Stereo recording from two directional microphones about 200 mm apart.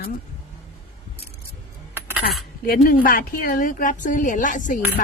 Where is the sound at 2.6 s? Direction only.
45° left (ahead or behind).